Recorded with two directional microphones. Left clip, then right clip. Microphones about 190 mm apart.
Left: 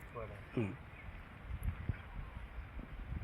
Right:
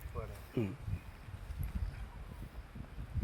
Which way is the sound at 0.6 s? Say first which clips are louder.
Right 2 dB; 20° right (ahead or behind).